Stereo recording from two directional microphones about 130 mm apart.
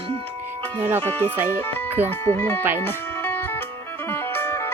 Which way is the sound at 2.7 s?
15° left (ahead or behind).